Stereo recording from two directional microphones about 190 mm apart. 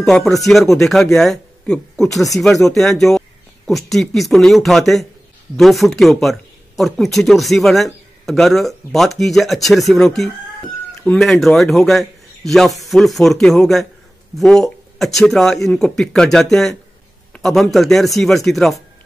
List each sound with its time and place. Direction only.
0.0 s a man's voice: centre (ahead or behind)